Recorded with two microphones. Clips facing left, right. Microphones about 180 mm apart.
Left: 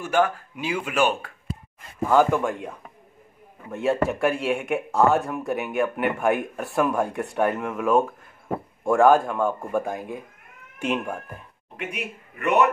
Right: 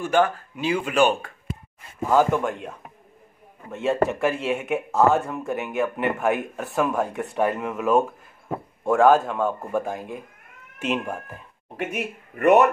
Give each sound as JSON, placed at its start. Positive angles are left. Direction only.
{"t": 0.0, "sound": "speech", "side_deg": 10}
{"t": 3.7, "sound": "speech", "side_deg": 0}
{"t": 11.8, "sound": "speech", "side_deg": -55}